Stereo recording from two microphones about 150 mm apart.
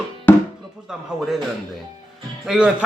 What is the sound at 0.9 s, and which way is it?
Speech, centre (ahead or behind).